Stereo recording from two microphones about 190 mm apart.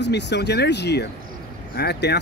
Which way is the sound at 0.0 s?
65° left (ahead or behind).